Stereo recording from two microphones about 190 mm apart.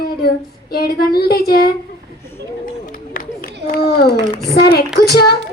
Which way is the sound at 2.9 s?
50° left (ahead or behind).